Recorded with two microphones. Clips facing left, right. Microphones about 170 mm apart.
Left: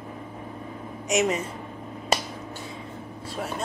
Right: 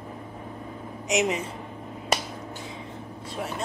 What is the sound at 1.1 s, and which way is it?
Speech, 20° right (ahead or behind).